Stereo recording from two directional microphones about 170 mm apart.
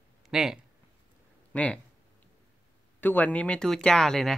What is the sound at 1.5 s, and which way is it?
Speech, 10° left (ahead or behind).